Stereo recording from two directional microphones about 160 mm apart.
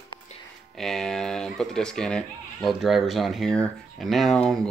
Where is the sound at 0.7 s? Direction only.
Centre (ahead or behind).